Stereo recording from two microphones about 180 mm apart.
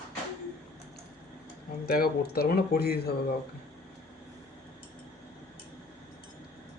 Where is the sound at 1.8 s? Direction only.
55° left (ahead or behind).